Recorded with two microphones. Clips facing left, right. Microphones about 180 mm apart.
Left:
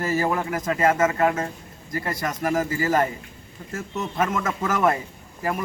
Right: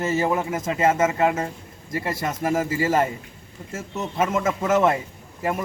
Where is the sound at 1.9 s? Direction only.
25° right (ahead or behind).